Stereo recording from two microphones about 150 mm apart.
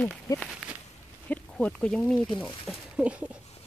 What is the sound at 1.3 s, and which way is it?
Speech, 5° left (ahead or behind).